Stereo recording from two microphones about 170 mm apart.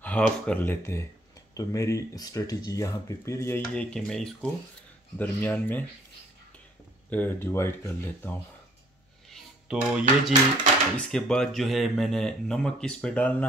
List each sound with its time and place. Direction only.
0.0 s speech: 10° left (ahead or behind)
7.1 s speech: 10° left (ahead or behind)
9.3 s speech: 5° right (ahead or behind)